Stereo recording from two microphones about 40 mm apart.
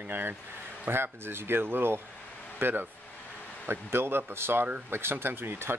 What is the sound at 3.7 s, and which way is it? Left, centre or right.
Speech, right.